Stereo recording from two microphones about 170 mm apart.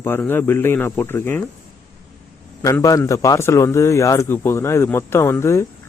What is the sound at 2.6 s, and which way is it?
Speech, 20° left (ahead or behind).